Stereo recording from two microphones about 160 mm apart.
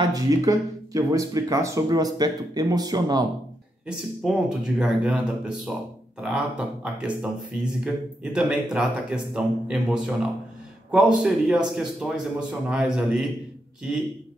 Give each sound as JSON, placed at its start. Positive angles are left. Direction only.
{"t": 0.0, "sound": "speech", "side_deg": -25}
{"t": 3.8, "sound": "speech", "side_deg": -5}
{"t": 6.2, "sound": "speech", "side_deg": -5}